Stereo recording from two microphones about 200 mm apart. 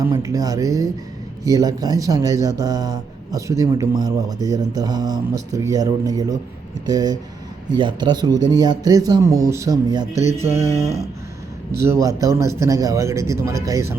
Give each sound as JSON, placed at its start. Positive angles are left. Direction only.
{"t": 0.0, "sound": "a man's voice", "side_deg": -15}
{"t": 11.7, "sound": "speech", "side_deg": -15}